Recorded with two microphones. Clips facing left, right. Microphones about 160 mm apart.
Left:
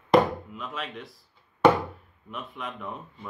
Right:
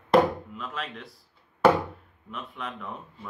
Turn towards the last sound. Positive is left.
turn(degrees=0)  # may be behind; listen again after turning